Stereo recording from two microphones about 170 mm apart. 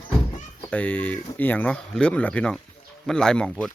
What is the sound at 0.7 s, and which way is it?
Speech, 10° left (ahead or behind).